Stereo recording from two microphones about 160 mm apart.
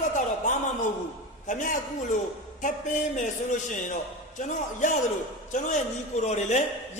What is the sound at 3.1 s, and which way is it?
A man's voice, 50° left (ahead or behind).